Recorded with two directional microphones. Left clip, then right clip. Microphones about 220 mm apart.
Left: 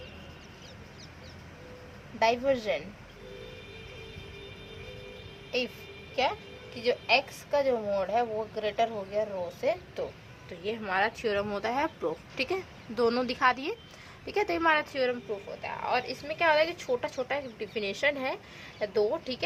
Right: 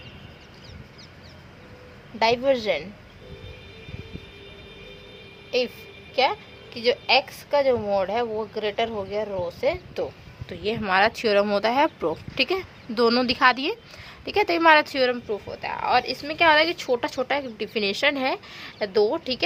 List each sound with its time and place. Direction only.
2.1 s speech: 45° right (ahead or behind)
6.7 s speech: 45° right (ahead or behind)